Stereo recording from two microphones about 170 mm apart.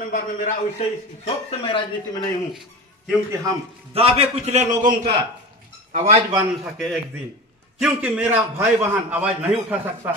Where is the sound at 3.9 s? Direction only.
35° right (ahead or behind).